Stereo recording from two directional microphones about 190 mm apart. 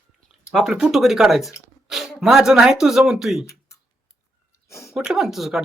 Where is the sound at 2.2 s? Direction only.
5° right (ahead or behind).